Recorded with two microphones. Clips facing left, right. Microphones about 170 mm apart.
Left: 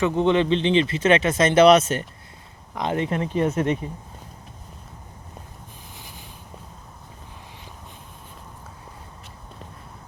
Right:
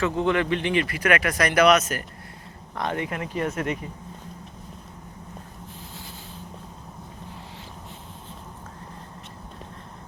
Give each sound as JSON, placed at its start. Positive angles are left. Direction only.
{"t": 0.0, "sound": "speech", "side_deg": 20}